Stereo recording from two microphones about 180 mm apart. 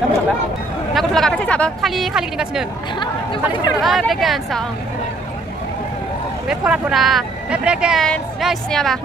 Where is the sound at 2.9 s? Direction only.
25° left (ahead or behind).